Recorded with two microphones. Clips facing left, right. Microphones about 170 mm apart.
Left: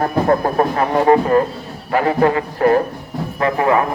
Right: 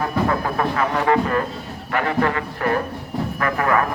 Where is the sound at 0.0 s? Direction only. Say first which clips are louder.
Left 5 dB; 40° left (ahead or behind).